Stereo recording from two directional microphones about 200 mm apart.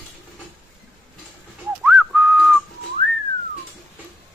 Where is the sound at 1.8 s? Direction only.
5° right (ahead or behind).